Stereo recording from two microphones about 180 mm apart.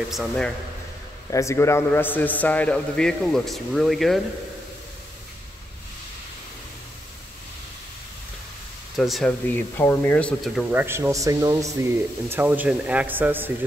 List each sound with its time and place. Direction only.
0.1 s speech: centre (ahead or behind)
1.3 s a man's voice: 15° left (ahead or behind); by 4.2 s centre (ahead or behind)
8.9 s speech: centre (ahead or behind)
9.6 s speech: 10° left (ahead or behind); by 13.5 s 10° right (ahead or behind)